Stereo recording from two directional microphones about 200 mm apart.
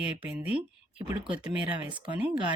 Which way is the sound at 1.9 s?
25° right (ahead or behind).